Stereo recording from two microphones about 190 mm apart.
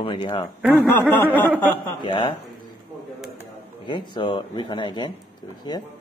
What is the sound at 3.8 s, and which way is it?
Speech, 25° left (ahead or behind).